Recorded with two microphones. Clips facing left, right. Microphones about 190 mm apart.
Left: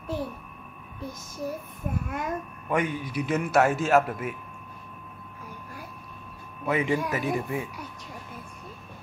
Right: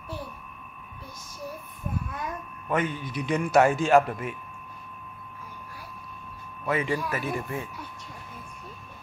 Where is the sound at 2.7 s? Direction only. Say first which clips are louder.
Left 1 dB; 10° left (ahead or behind).